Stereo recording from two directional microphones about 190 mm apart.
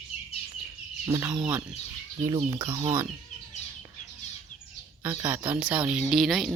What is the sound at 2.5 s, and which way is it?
Speech, 25° right (ahead or behind).